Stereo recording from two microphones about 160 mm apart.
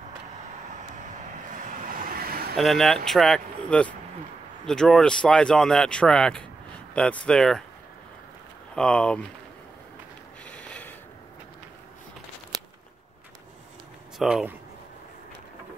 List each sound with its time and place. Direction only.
1.5 s vehicle: 55° right (ahead or behind)
2.5 s speech: centre (ahead or behind)
8.7 s speech: 5° left (ahead or behind)
10.4 s mechanisms: 5° left (ahead or behind)
14.1 s speech: 5° right (ahead or behind)